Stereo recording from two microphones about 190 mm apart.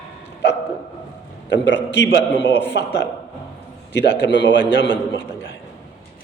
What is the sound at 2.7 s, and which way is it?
Speech, 65° left (ahead or behind).